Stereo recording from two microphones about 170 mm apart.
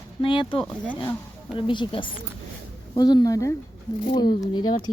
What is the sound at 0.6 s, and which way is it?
Speech, 10° left (ahead or behind).